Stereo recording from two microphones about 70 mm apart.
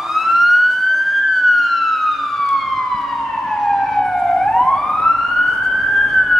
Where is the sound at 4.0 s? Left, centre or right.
Centre.